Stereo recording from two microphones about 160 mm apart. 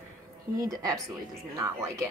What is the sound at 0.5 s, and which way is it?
Speech, 20° right (ahead or behind).